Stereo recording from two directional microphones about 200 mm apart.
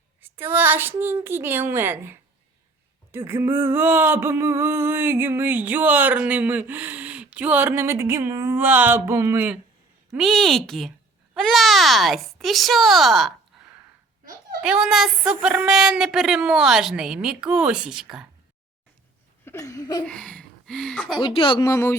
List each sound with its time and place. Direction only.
0.2 s a woman's voice: 10° right (ahead or behind)
3.1 s a sound: 10° right (ahead or behind)
10.2 s speech: centre (ahead or behind)
14.6 s speech: 5° right (ahead or behind)
19.5 s a sound: 15° left (ahead or behind)
20.1 s speech: 5° left (ahead or behind)
21.2 s speech: 25° left (ahead or behind)